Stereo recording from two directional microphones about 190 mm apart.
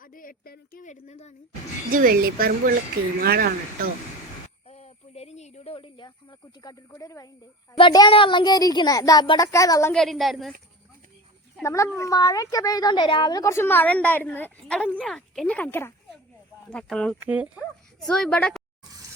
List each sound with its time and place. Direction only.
0.0 s speech: 45° left (ahead or behind)
1.9 s speech: 45° right (ahead or behind)
4.7 s speech: 35° left (ahead or behind); by 9.9 s 15° left (ahead or behind)
9.9 s a woman's voice: centre (ahead or behind)
11.6 s a woman's voice: 15° left (ahead or behind)
17.2 s speech: 5° right (ahead or behind)
18.0 s a woman's voice: 5° left (ahead or behind)